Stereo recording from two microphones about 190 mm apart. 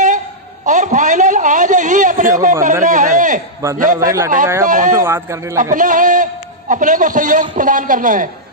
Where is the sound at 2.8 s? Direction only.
40° right (ahead or behind).